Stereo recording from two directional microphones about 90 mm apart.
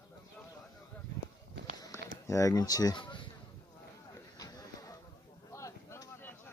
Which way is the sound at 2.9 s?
65° left (ahead or behind).